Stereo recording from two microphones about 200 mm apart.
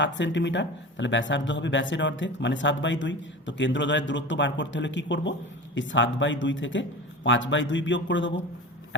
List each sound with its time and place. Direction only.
0.0 s a man's voice: 65° left (ahead or behind)